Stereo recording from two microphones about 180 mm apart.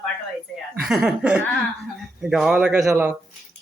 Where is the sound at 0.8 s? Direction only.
Centre (ahead or behind).